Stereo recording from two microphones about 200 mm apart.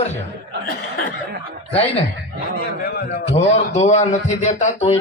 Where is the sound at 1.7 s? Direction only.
30° left (ahead or behind).